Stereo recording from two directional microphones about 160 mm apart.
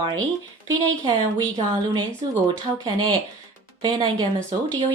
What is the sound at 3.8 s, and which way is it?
Speech, 25° right (ahead or behind).